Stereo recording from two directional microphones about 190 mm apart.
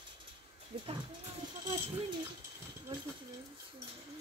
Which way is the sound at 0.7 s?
25° right (ahead or behind).